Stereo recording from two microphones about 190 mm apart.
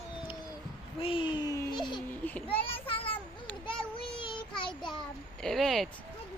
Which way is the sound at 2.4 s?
30° left (ahead or behind).